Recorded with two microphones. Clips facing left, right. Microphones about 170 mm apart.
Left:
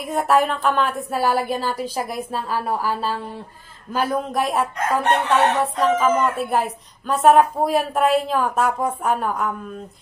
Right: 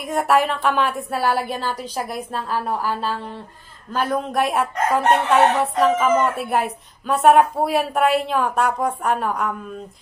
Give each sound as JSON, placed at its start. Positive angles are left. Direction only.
{"t": 0.0, "sound": "speech", "side_deg": 0}